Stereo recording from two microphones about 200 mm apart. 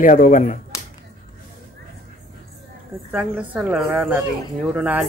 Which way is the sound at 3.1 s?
5° right (ahead or behind).